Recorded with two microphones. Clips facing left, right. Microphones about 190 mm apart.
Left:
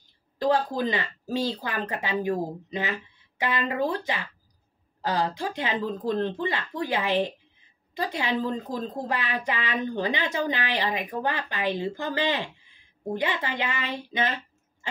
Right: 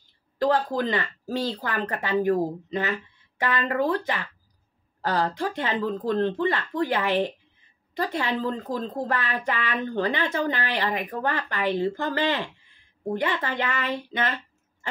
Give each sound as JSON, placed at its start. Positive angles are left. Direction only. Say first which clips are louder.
{"t": 0.4, "sound": "speech", "louder": "right 1 dB", "side_deg": 15}